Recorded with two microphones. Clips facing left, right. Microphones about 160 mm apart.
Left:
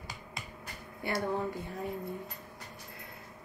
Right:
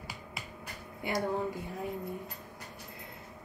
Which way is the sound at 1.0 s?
15° right (ahead or behind).